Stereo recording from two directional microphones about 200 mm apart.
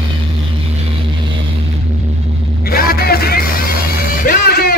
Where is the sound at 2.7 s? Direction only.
50° left (ahead or behind).